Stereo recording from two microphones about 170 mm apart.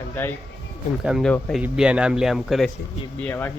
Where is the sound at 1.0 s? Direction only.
5° right (ahead or behind).